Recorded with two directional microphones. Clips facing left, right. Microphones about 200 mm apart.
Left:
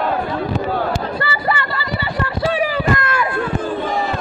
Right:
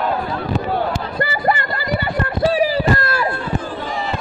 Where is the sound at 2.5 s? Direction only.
35° right (ahead or behind).